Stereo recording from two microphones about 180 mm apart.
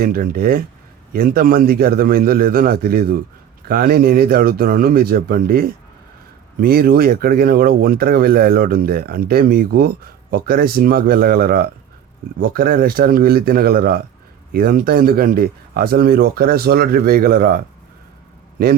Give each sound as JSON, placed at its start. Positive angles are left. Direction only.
{"t": 0.0, "sound": "speech", "side_deg": -55}